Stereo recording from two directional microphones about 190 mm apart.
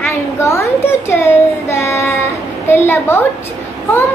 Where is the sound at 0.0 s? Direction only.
15° left (ahead or behind).